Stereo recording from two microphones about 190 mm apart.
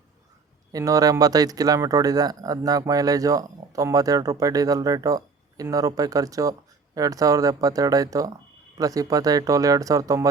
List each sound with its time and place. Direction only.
0.7 s speech: 20° right (ahead or behind)